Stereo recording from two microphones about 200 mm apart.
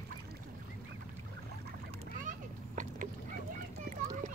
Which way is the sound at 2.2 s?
40° right (ahead or behind).